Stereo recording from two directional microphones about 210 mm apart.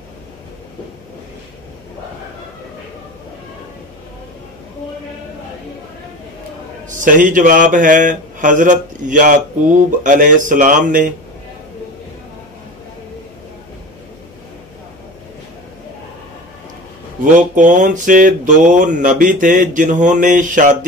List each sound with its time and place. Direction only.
7.0 s speech: 40° right (ahead or behind)
17.2 s speech: 35° right (ahead or behind)